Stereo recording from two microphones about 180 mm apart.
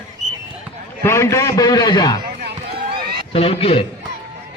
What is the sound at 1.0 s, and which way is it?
A man's voice, 15° left (ahead or behind).